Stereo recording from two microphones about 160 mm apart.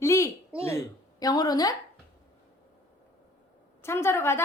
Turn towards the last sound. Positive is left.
turn(degrees=15)  # may be behind; listen again after turning